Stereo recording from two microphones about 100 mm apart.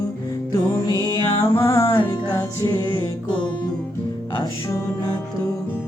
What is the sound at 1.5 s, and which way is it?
Music, 30° left (ahead or behind).